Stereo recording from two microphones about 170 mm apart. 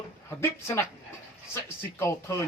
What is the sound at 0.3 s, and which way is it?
Speech, 15° left (ahead or behind).